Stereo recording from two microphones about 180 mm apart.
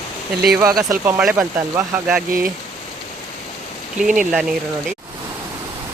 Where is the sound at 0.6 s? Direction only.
20° right (ahead or behind).